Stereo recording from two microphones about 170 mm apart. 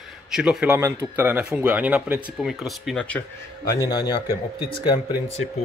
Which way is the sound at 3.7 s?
25° left (ahead or behind).